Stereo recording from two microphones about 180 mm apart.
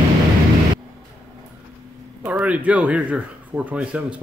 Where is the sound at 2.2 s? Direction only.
10° right (ahead or behind).